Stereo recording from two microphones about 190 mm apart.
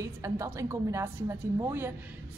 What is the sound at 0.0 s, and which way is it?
Speech, 15° right (ahead or behind).